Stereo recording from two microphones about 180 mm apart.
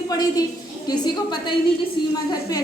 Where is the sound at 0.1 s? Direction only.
20° left (ahead or behind).